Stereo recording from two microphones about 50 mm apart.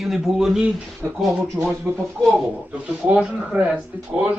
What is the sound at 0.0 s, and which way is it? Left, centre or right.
Speech, centre.